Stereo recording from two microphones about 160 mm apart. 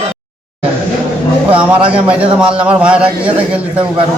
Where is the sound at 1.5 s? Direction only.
10° right (ahead or behind).